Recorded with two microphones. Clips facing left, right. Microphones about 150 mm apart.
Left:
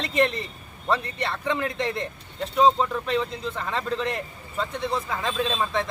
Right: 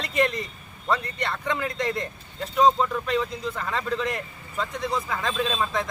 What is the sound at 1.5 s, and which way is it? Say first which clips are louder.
A man's voice: left 1 dB; centre (ahead or behind).